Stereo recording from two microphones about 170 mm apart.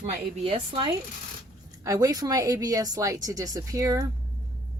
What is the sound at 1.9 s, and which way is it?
Speech, 20° right (ahead or behind).